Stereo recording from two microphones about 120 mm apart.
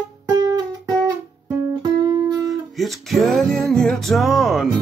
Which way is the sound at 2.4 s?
Centre (ahead or behind).